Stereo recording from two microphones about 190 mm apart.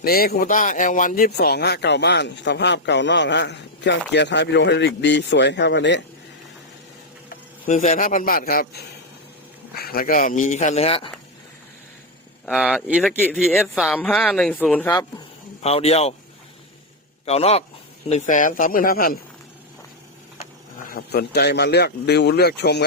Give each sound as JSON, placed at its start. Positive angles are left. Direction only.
{"t": 0.0, "sound": "speech", "side_deg": 50}
{"t": 7.3, "sound": "speech", "side_deg": 45}
{"t": 12.5, "sound": "speech", "side_deg": -5}
{"t": 15.6, "sound": "speech", "side_deg": 35}
{"t": 17.2, "sound": "speech", "side_deg": 35}
{"t": 20.8, "sound": "speech", "side_deg": 50}